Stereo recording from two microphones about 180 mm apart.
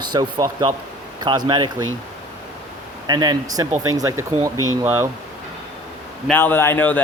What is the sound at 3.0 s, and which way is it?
Speech, 20° right (ahead or behind).